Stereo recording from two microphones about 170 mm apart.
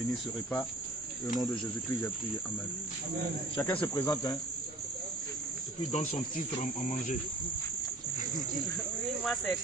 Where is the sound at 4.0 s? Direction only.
20° left (ahead or behind).